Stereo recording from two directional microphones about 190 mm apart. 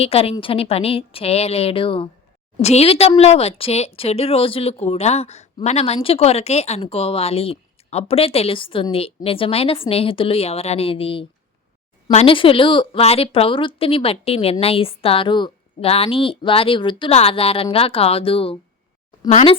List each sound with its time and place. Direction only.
0.0 s a woman's voice: 30° left (ahead or behind)